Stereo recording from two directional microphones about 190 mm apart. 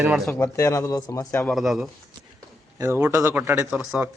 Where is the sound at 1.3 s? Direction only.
Centre (ahead or behind).